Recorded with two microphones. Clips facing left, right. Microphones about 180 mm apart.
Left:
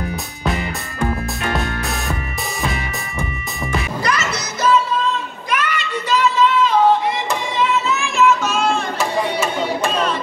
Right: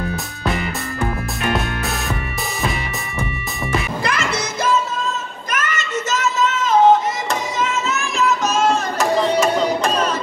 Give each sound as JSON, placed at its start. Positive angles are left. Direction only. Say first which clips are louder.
{"t": 1.5, "sound": "music", "louder": "right 1 dB", "side_deg": 0}
{"t": 4.0, "sound": "music", "louder": "even", "side_deg": -55}
{"t": 5.5, "sound": "child singing", "louder": "left 2 dB", "side_deg": -45}
{"t": 7.5, "sound": "music", "louder": "left 3 dB", "side_deg": -45}
{"t": 9.3, "sound": "carnatic music", "louder": "right 4 dB", "side_deg": -40}